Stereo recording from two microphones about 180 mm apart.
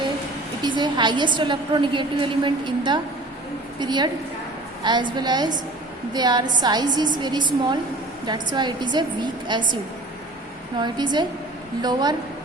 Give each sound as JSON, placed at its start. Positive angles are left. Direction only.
{"t": 0.6, "sound": "a woman's voice", "side_deg": -25}
{"t": 10.8, "sound": "a woman's voice", "side_deg": -25}